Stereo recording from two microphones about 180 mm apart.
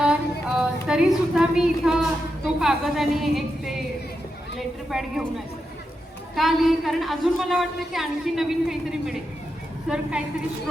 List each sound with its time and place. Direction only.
0.6 s a woman's voice: 5° right (ahead or behind)
4.9 s a woman's voice: centre (ahead or behind)
6.3 s a woman's voice: centre (ahead or behind)